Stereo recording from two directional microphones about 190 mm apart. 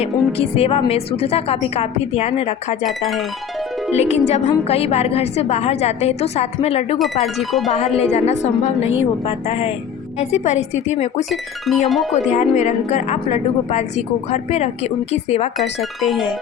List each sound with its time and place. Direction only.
0.0 s a woman's voice: 35° left (ahead or behind)
2.8 s speech: centre (ahead or behind)
3.9 s a woman's voice: 35° left (ahead or behind)
7.3 s speech: centre (ahead or behind)
7.9 s a woman's voice: 35° left (ahead or behind)
11.3 s speech: centre (ahead or behind)
12.1 s a woman's voice: 35° left (ahead or behind)
15.8 s speech: centre (ahead or behind)